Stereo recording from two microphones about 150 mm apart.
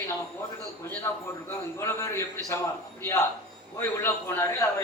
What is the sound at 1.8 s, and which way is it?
A man's voice, 20° left (ahead or behind).